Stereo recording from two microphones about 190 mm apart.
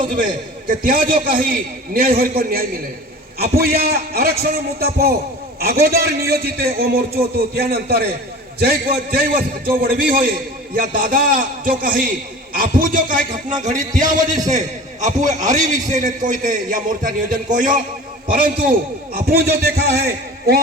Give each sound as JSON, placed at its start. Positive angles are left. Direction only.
{"t": 0.7, "sound": "a man's voice", "side_deg": -45}